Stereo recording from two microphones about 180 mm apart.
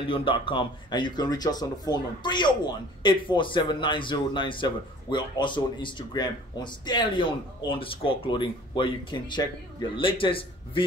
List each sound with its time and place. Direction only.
0.0 s speech: 30° left (ahead or behind)